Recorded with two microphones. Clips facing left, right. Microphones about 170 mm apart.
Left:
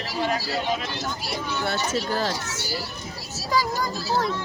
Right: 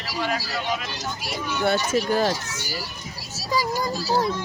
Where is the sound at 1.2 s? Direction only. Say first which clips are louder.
Right 6 dB; 15° right (ahead or behind).